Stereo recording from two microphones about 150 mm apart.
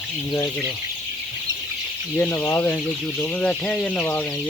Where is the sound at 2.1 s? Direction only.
15° left (ahead or behind).